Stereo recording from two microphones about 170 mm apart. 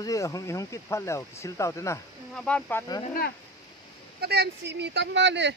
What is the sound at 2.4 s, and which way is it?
Speech, 5° left (ahead or behind).